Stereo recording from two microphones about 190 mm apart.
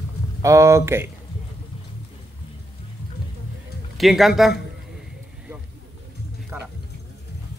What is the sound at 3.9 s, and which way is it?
Speech, centre (ahead or behind).